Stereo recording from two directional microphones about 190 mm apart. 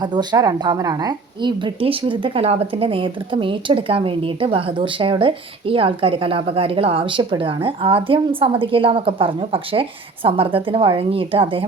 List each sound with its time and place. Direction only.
0.0 s a woman's voice: 20° right (ahead or behind)